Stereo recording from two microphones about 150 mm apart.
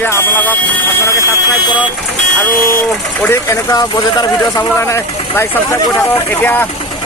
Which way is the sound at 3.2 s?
15° left (ahead or behind).